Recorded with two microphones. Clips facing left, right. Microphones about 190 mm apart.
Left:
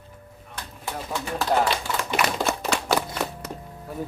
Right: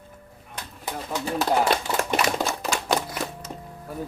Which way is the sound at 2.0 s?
50° right (ahead or behind).